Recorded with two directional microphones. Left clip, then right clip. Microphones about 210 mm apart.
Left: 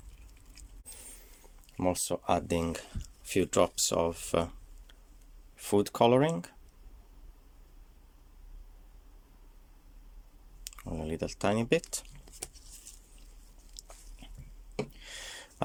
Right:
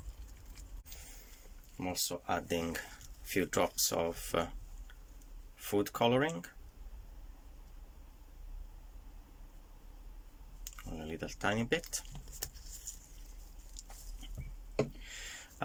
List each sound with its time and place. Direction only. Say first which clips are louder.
1.8 s speech: left 7 dB; 30° left (ahead or behind)
10.6 s speech: left 6 dB; 25° left (ahead or behind)
15.0 s a sound: left 3 dB; 25° left (ahead or behind)